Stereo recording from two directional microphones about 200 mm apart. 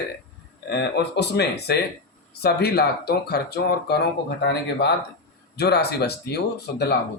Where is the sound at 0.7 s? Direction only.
55° left (ahead or behind).